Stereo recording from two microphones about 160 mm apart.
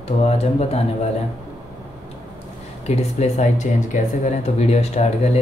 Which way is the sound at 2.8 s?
45° left (ahead or behind).